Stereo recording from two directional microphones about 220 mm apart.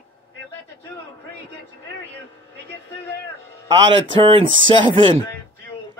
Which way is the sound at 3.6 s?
20° right (ahead or behind).